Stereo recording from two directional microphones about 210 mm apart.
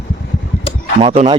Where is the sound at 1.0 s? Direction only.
25° right (ahead or behind).